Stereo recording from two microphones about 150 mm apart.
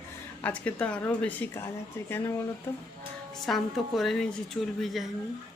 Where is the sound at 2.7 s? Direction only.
15° left (ahead or behind).